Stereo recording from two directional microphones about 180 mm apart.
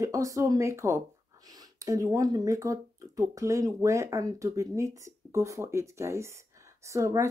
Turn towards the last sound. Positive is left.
turn(degrees=-15)  # may be behind; listen again after turning